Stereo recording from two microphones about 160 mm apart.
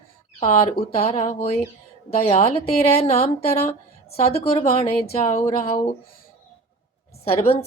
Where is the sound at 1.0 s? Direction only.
40° left (ahead or behind).